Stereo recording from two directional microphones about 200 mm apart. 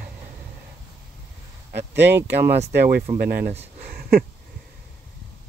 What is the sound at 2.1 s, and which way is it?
Speech, 10° right (ahead or behind).